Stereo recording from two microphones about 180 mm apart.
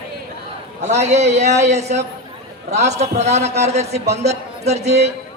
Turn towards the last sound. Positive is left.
turn(degrees=-40)  # may be behind; listen again after turning